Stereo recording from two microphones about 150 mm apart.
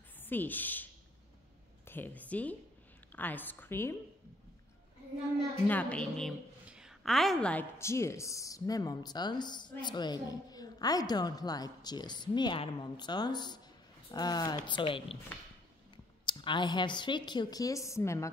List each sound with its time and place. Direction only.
0.2 s speech: 15° left (ahead or behind)
1.9 s a woman's voice: 15° left (ahead or behind)
5.7 s a woman's voice: 10° left (ahead or behind)
6.7 s a sound: 5° right (ahead or behind)
7.8 s speech: 20° left (ahead or behind); by 15.1 s 35° left (ahead or behind)
16.3 s speech: 30° left (ahead or behind)